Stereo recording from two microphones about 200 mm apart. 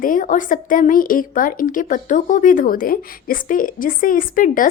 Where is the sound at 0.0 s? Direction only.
45° left (ahead or behind).